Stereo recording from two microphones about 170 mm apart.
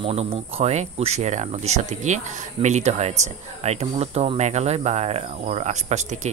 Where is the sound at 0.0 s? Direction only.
35° right (ahead or behind).